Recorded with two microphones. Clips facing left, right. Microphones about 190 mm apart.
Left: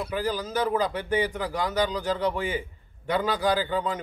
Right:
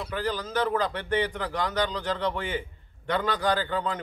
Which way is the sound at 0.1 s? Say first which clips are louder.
Even; 10° left (ahead or behind).